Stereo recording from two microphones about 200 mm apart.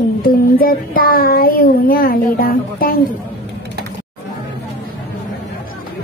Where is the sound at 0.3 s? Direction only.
45° left (ahead or behind).